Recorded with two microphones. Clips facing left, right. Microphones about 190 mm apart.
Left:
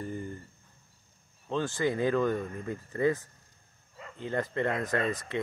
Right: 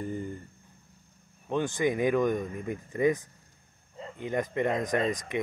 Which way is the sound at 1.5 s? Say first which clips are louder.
Right 2 dB; 15° right (ahead or behind).